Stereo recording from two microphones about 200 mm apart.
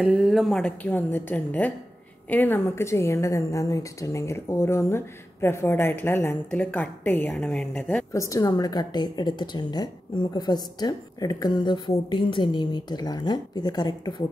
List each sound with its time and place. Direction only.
0.0 s a woman's voice: 5° right (ahead or behind)
8.1 s a woman's voice: 15° left (ahead or behind)